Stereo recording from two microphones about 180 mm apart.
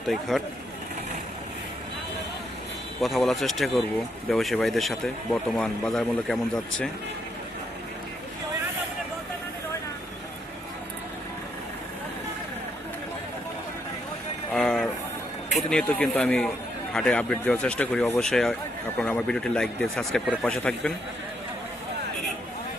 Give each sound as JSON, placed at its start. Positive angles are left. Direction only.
{"t": 0.1, "sound": "speech", "side_deg": 0}
{"t": 3.0, "sound": "speech", "side_deg": 0}
{"t": 14.5, "sound": "vehicle", "side_deg": 5}
{"t": 15.7, "sound": "speech", "side_deg": 5}